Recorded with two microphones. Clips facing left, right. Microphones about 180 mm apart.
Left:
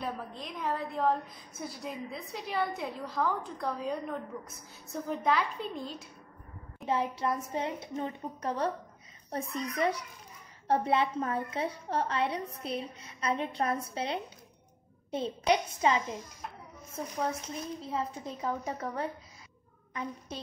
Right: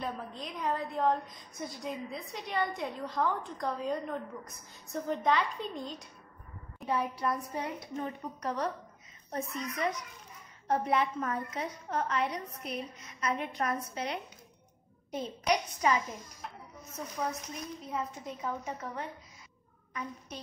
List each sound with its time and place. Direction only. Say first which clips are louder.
0.0 s a woman's voice: even; centre (ahead or behind)
6.9 s a woman's voice: left 1 dB; 25° left (ahead or behind)